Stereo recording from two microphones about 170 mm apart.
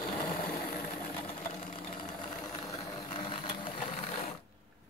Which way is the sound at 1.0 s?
30° left (ahead or behind).